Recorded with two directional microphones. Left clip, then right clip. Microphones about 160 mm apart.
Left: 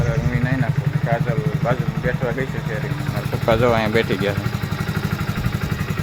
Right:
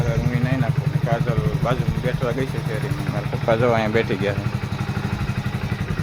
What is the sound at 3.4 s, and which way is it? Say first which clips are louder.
Speech: left 2 dB; 10° left (ahead or behind).